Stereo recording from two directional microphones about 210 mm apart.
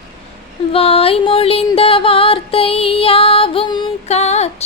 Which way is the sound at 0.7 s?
25° left (ahead or behind).